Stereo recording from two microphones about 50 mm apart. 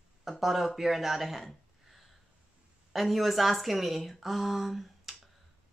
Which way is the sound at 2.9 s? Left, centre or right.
Centre.